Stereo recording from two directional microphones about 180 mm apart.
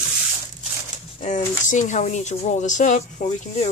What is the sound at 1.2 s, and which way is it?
Speech, 45° left (ahead or behind).